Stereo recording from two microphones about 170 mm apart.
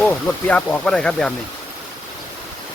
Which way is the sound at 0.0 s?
10° left (ahead or behind).